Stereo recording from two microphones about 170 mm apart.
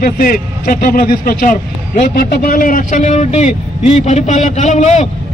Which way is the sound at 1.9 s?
50° left (ahead or behind).